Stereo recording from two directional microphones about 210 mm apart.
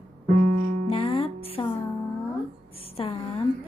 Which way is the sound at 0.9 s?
25° left (ahead or behind).